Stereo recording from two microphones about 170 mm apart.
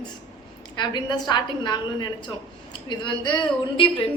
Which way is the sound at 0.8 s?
25° left (ahead or behind).